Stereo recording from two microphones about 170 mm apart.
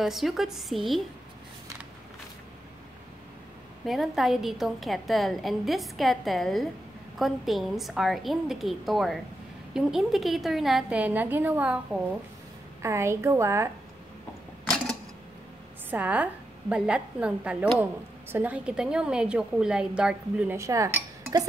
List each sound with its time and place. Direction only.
0.0 s a woman's voice: centre (ahead or behind)
3.8 s a woman's voice: centre (ahead or behind)
15.9 s a woman's voice: 10° right (ahead or behind)
20.5 s dishes: 20° right (ahead or behind)